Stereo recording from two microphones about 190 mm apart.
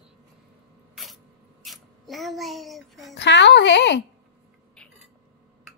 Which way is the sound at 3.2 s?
65° left (ahead or behind).